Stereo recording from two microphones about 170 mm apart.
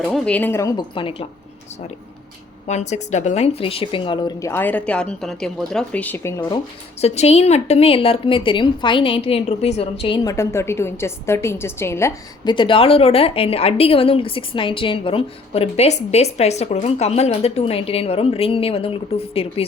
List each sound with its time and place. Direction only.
0.1 s a woman's voice: 10° left (ahead or behind)
0.9 s a woman's voice: 30° left (ahead or behind)
2.6 s a woman's voice: 40° left (ahead or behind); by 6.6 s 15° left (ahead or behind)
7.0 s a woman's voice: 40° left (ahead or behind)
10.2 s a woman's voice: 15° left (ahead or behind)
12.5 s a woman's voice: 30° left (ahead or behind)